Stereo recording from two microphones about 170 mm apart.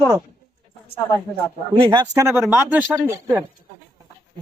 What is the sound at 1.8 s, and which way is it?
Speech, 25° right (ahead or behind).